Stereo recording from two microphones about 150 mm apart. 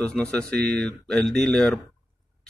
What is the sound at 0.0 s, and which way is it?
Speech, 5° left (ahead or behind).